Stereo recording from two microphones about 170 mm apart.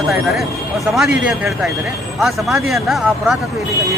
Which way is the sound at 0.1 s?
Centre (ahead or behind).